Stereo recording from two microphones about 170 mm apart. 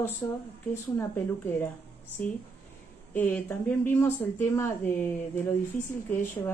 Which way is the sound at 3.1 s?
10° left (ahead or behind).